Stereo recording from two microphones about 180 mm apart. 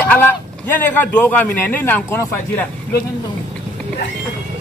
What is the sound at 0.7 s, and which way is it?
Speech, 10° left (ahead or behind).